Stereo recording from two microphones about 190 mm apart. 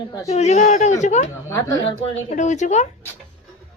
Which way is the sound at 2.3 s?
40° left (ahead or behind).